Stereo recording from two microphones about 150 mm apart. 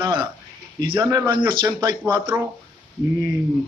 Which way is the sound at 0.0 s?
30° right (ahead or behind).